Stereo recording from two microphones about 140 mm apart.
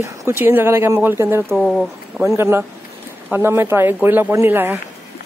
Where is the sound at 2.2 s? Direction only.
20° right (ahead or behind).